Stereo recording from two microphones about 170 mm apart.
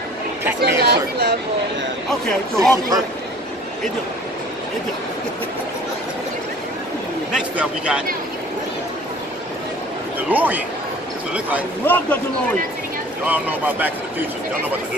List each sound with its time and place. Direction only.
0.6 s speech: 75° right (ahead or behind)
2.0 s speech: centre (ahead or behind)
7.3 s speech: 5° right (ahead or behind)
10.3 s speech: 10° right (ahead or behind)
11.8 s a man's voice: 10° left (ahead or behind)
13.2 s speech: 10° right (ahead or behind)